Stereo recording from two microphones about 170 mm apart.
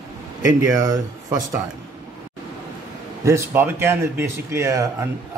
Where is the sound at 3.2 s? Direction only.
15° right (ahead or behind).